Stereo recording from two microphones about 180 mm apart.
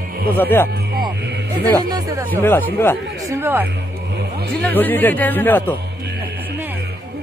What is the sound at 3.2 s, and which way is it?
Speech, 15° right (ahead or behind).